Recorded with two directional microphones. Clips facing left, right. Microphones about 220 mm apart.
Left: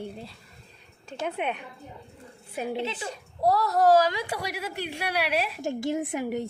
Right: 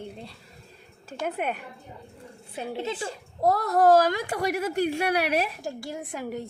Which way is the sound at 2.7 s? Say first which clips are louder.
Even; 40° right (ahead or behind).